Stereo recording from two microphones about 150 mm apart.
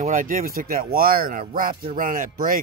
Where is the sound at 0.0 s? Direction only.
60° right (ahead or behind).